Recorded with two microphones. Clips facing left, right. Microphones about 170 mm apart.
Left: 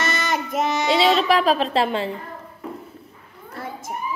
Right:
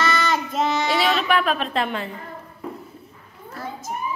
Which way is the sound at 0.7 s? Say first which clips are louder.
Left 7 dB; 25° left (ahead or behind).